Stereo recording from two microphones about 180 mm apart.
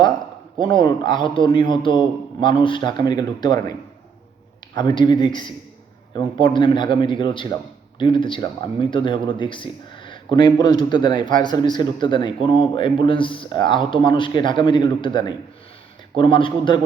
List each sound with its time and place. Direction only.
0.6 s a man's voice: 25° left (ahead or behind)
4.8 s a man's voice: 25° left (ahead or behind)